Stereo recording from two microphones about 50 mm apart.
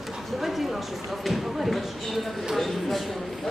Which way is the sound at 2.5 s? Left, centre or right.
Centre.